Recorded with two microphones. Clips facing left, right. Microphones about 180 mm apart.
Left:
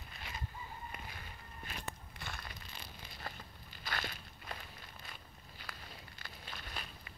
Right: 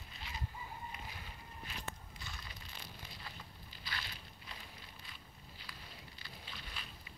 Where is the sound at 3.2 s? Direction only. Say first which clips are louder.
Left 4 dB; 50° left (ahead or behind).